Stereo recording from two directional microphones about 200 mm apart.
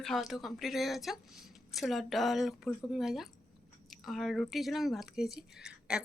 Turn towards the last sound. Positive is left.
turn(degrees=-5)  # may be behind; listen again after turning